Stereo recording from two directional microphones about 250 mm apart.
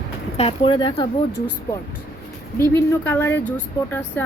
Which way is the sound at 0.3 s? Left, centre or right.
Left.